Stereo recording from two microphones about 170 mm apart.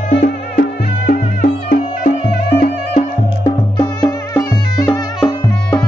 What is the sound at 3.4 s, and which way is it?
Music, 25° left (ahead or behind).